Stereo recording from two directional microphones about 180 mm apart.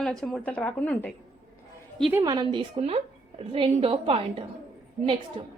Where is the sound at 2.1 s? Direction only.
15° right (ahead or behind).